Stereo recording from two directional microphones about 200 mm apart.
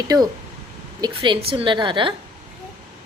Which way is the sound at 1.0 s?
25° right (ahead or behind).